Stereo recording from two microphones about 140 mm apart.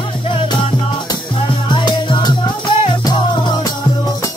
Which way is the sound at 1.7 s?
35° left (ahead or behind).